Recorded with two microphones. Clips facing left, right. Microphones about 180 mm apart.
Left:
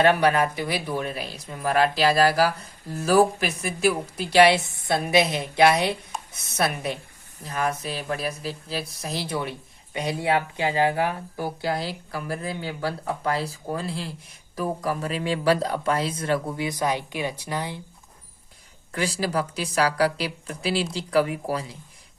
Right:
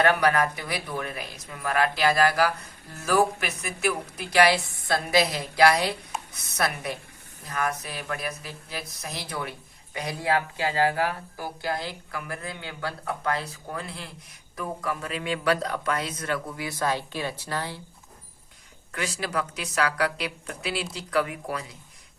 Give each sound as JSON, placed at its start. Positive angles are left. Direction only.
{"t": 0.0, "sound": "speech", "side_deg": 25}
{"t": 18.9, "sound": "a woman's voice", "side_deg": 30}